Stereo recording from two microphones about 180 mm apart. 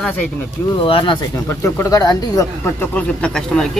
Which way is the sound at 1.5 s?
15° left (ahead or behind).